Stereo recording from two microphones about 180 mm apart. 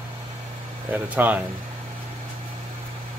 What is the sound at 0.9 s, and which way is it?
Speech, 10° right (ahead or behind).